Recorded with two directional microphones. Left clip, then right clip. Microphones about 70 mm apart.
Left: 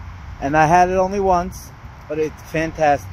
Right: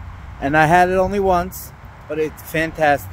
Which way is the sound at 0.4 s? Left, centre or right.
Right.